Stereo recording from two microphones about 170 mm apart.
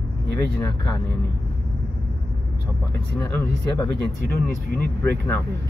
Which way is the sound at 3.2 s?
15° left (ahead or behind).